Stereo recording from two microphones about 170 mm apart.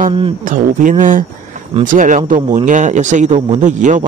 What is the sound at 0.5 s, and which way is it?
A man's voice, 50° right (ahead or behind).